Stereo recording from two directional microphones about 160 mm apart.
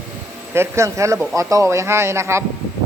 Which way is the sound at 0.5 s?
15° right (ahead or behind).